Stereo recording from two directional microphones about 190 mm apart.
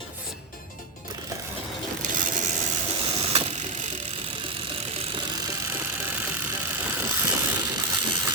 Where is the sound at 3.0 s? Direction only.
30° right (ahead or behind).